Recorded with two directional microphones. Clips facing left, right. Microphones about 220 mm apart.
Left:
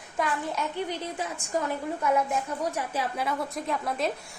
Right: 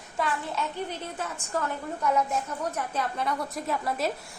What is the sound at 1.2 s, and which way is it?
A woman's voice, 15° left (ahead or behind).